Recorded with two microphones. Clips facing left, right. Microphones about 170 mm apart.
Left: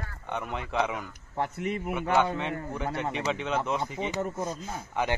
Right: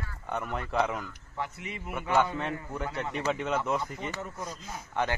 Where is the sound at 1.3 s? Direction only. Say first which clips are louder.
Left 7 dB; 50° left (ahead or behind).